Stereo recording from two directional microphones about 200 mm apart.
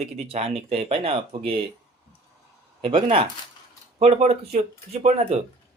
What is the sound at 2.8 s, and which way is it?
Speech, 25° right (ahead or behind).